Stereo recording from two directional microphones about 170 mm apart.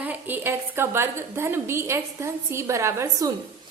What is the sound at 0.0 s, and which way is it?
A woman's voice, 10° right (ahead or behind).